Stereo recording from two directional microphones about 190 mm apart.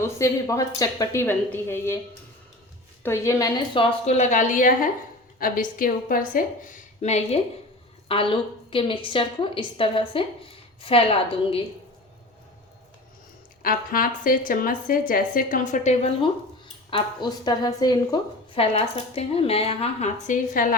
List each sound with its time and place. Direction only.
0.0 s a woman's voice: 15° left (ahead or behind)
3.0 s a woman's voice: 15° left (ahead or behind)
4.0 s a woman's voice: 35° left (ahead or behind)
13.6 s a woman's voice: 50° left (ahead or behind)
16.9 s a woman's voice: 20° left (ahead or behind); by 20.7 s 45° left (ahead or behind)